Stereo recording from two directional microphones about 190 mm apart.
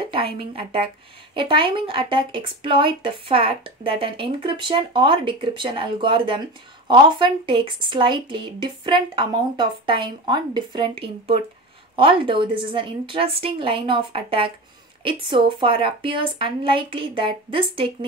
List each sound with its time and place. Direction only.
0.0 s speech: 30° right (ahead or behind)